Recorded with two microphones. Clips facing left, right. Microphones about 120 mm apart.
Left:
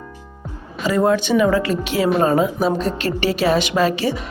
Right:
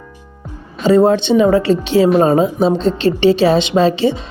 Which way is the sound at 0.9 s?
30° right (ahead or behind).